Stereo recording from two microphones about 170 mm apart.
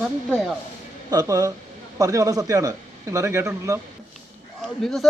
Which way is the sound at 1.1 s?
20° right (ahead or behind).